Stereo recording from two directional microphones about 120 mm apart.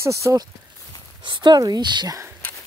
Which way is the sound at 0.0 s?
25° right (ahead or behind).